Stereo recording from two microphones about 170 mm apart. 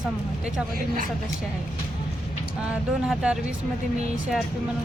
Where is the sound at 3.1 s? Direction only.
5° right (ahead or behind).